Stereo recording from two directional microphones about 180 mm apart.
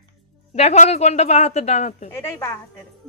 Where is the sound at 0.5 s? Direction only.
40° left (ahead or behind).